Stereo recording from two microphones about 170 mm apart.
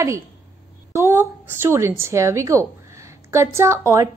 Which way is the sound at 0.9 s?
15° right (ahead or behind).